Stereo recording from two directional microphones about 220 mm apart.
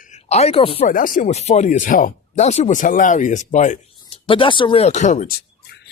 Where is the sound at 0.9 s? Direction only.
40° left (ahead or behind).